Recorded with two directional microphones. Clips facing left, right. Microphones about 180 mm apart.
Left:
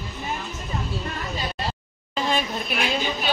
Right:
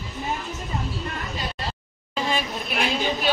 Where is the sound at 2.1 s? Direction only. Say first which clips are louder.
Left 1 dB; centre (ahead or behind).